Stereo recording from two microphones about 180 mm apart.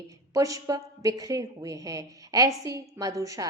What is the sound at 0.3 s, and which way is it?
A woman's voice, 20° right (ahead or behind).